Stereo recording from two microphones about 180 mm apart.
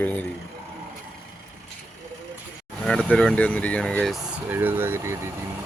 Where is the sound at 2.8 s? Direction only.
5° left (ahead or behind); by 5.1 s 15° right (ahead or behind).